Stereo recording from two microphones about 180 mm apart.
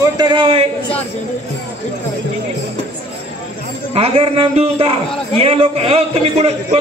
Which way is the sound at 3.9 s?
35° right (ahead or behind).